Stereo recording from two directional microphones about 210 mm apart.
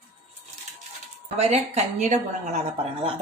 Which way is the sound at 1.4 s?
30° right (ahead or behind).